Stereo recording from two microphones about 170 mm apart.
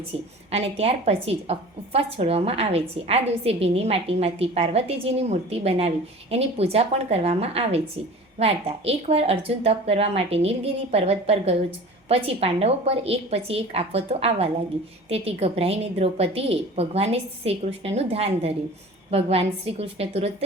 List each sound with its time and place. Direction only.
0.5 s a woman's voice: 35° right (ahead or behind)